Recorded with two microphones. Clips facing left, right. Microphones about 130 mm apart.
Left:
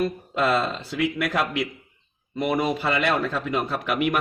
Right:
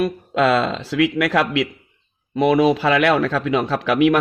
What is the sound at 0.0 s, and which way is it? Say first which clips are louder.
Speech: right 5 dB; 85° right.